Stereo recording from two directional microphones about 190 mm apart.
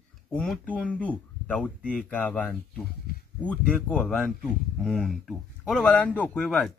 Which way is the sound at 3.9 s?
Centre (ahead or behind).